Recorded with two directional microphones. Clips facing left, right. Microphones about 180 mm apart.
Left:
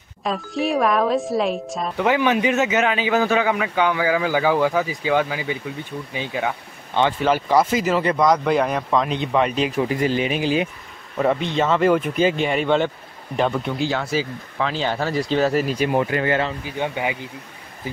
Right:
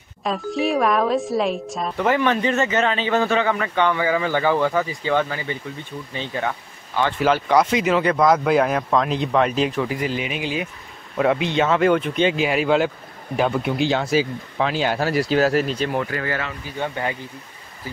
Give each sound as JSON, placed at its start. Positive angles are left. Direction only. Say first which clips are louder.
{"t": 0.2, "sound": "a woman's voice", "louder": "right 1 dB", "side_deg": 0}
{"t": 7.0, "sound": "speech", "louder": "left 3 dB", "side_deg": 25}
{"t": 7.4, "sound": "a woman's voice", "louder": "even", "side_deg": 0}
{"t": 9.8, "sound": "speech", "louder": "left 3 dB", "side_deg": 25}
{"t": 11.1, "sound": "a woman's voice", "louder": "right 1 dB", "side_deg": 0}
{"t": 13.7, "sound": "speech", "louder": "right 3 dB", "side_deg": -20}
{"t": 15.7, "sound": "speech", "louder": "left 3 dB", "side_deg": 15}
{"t": 16.6, "sound": "speech", "louder": "left 1 dB", "side_deg": 15}